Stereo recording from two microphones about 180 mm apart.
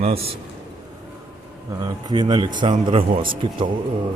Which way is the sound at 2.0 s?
25° right (ahead or behind).